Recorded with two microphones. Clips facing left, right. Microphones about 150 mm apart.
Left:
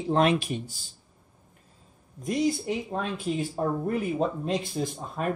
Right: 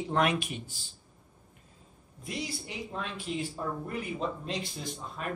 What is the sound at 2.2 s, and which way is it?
Speech, 45° left (ahead or behind).